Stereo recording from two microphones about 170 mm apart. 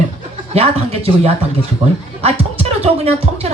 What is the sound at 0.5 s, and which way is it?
A woman's voice, 35° right (ahead or behind).